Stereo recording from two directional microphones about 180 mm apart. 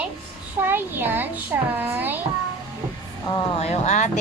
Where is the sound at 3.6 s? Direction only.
40° left (ahead or behind).